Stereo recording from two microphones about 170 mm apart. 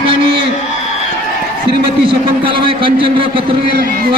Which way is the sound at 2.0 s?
30° right (ahead or behind).